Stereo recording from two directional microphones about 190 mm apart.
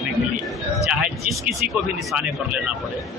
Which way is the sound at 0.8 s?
Centre (ahead or behind).